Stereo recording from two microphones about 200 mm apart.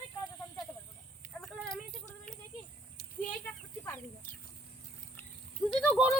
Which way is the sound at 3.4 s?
10° left (ahead or behind).